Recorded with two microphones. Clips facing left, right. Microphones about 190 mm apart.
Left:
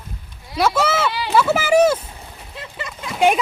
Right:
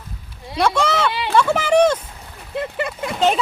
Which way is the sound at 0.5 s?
5° left (ahead or behind).